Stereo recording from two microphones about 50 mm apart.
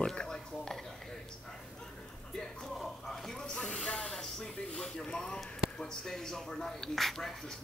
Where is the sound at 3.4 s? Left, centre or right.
Centre.